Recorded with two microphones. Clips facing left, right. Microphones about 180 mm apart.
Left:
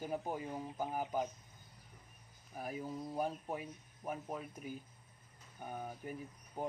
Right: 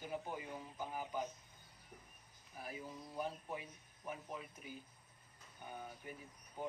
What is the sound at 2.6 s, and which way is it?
Speech, 45° left (ahead or behind).